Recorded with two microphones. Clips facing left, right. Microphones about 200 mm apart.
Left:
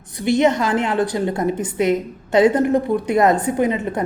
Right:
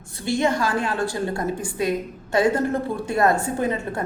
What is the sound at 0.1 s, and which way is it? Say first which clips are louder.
A woman's voice: left 6 dB; 20° left (ahead or behind).